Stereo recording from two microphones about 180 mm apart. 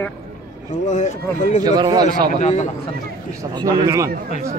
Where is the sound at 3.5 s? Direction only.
20° right (ahead or behind).